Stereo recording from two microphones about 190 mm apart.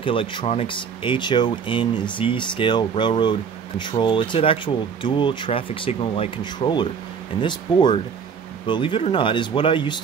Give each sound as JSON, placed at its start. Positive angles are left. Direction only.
{"t": 0.0, "sound": "speech", "side_deg": 25}